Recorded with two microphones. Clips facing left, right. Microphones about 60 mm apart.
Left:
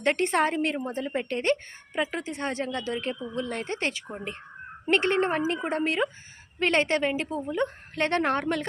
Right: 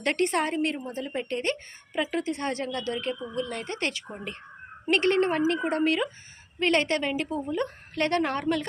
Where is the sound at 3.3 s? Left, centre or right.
Left.